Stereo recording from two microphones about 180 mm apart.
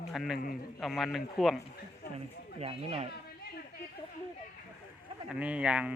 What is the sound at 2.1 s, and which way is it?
Speech, 35° right (ahead or behind).